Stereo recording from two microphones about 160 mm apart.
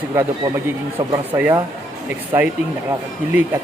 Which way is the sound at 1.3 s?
15° right (ahead or behind).